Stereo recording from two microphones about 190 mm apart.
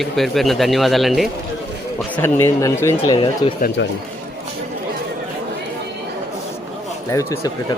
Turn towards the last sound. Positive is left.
turn(degrees=15)  # may be behind; listen again after turning